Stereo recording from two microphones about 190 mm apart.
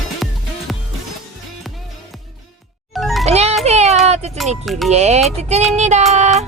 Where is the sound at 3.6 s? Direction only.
35° right (ahead or behind).